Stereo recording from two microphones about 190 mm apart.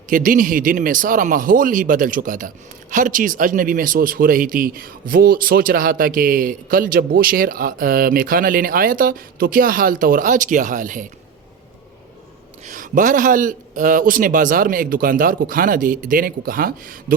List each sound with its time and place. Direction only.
0.1 s speech: 45° right (ahead or behind)
12.6 s speech: 45° right (ahead or behind)